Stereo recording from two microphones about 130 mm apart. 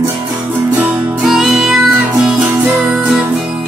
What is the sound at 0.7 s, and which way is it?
Music, 10° right (ahead or behind).